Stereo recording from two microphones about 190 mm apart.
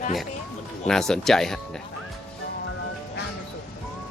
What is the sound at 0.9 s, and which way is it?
Speech, 5° left (ahead or behind).